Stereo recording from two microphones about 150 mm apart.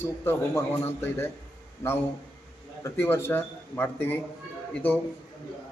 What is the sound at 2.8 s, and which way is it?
A man's voice, 15° left (ahead or behind).